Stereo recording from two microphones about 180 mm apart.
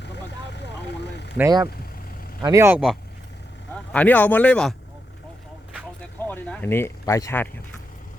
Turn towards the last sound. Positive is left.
turn(degrees=15)  # may be behind; listen again after turning